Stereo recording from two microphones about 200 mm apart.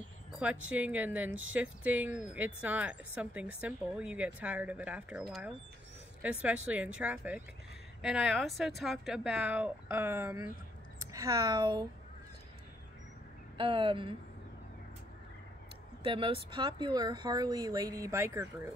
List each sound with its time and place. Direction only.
0.3 s speech: 5° right (ahead or behind); by 11.9 s 20° right (ahead or behind)
13.6 s speech: 25° right (ahead or behind)
16.0 s speech: 25° right (ahead or behind); by 18.7 s 10° right (ahead or behind)